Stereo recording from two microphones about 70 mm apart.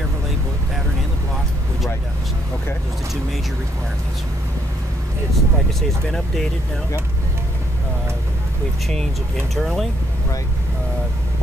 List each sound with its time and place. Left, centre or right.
5.3 s speech: centre
9.6 s speech: centre